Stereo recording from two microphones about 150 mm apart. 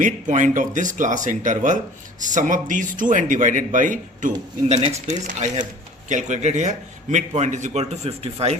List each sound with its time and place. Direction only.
0.0 s a man's voice: 55° right (ahead or behind)
4.7 s a man's voice: 45° right (ahead or behind)